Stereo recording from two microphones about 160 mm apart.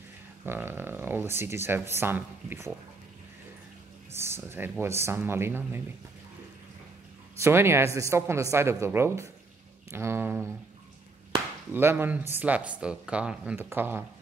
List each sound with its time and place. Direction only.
0.5 s speech: 15° right (ahead or behind)
4.2 s speech: 15° right (ahead or behind)
7.3 s speech: 15° right (ahead or behind)
11.7 s speech: 15° right (ahead or behind)